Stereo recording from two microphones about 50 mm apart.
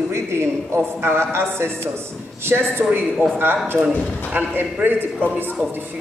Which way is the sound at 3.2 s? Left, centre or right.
Right.